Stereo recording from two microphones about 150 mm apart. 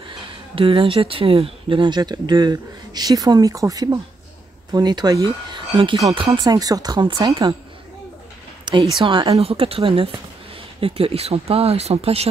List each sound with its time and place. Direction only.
0.6 s speech: 35° right (ahead or behind)
6.4 s speech: 25° right (ahead or behind)
8.7 s speech: 30° right (ahead or behind)